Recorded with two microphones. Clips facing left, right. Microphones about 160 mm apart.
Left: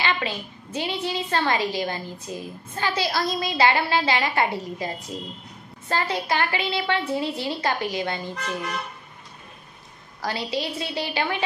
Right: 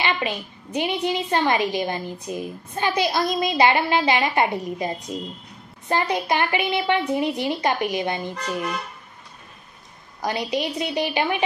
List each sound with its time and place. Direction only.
0.0 s a woman's voice: 15° right (ahead or behind)
10.2 s a woman's voice: 20° right (ahead or behind)